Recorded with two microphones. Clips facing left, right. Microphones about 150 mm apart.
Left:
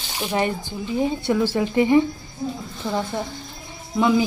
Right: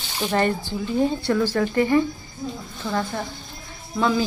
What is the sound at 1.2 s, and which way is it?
Speech, 20° left (ahead or behind).